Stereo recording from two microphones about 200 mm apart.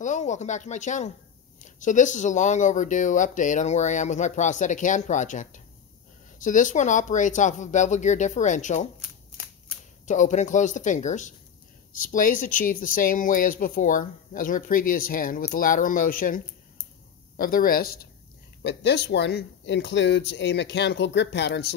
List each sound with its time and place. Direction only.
0.0 s speech: 35° left (ahead or behind)
10.0 s speech: 40° left (ahead or behind); by 21.7 s 55° left (ahead or behind)